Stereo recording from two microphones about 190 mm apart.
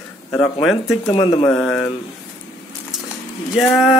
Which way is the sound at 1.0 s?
25° left (ahead or behind).